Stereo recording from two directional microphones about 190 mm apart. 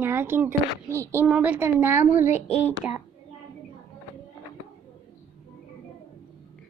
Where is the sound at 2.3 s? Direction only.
35° left (ahead or behind).